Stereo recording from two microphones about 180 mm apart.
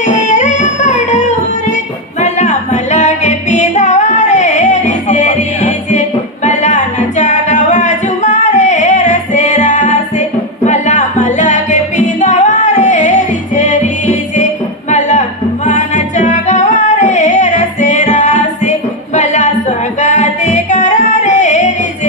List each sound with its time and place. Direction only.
0.0 s music: 40° left (ahead or behind)